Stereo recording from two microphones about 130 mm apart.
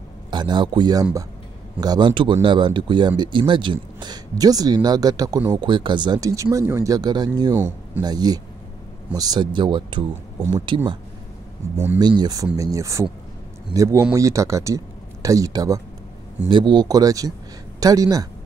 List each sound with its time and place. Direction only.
0.3 s a man's voice: 35° right (ahead or behind)
7.5 s speech: 15° right (ahead or behind)
8.0 s speech: 30° right (ahead or behind)
11.7 s speech: 15° right (ahead or behind)
12.0 s speech: 35° right (ahead or behind)
16.4 s speech: 35° right (ahead or behind)